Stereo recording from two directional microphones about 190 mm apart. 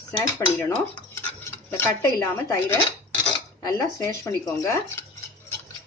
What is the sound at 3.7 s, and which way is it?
Speech, 15° left (ahead or behind).